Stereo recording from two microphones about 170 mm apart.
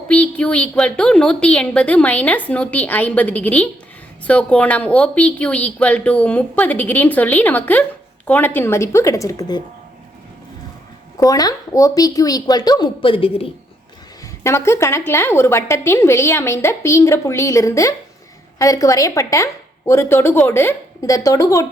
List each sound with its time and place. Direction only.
0.1 s a woman's voice: 5° left (ahead or behind)
11.2 s speech: 20° left (ahead or behind)
14.4 s a woman's voice: 15° left (ahead or behind)